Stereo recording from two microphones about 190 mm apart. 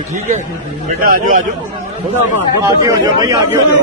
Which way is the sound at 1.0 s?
45° right (ahead or behind).